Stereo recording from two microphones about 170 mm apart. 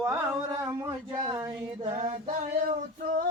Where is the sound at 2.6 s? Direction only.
55° right (ahead or behind).